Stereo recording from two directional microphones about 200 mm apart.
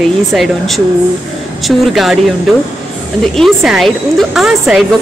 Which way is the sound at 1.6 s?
Centre (ahead or behind).